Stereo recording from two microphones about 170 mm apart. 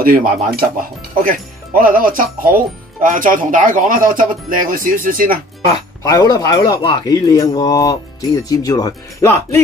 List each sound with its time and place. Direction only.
0.0 s speech: 55° right (ahead or behind)
5.7 s speech: 20° left (ahead or behind)